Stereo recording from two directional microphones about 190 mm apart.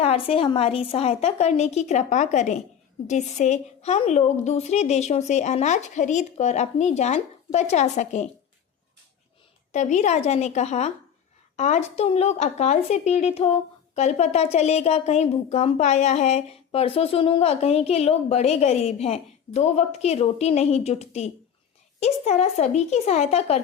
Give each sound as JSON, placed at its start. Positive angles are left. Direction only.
{"t": 0.0, "sound": "speech", "side_deg": 30}
{"t": 9.7, "sound": "speech", "side_deg": 40}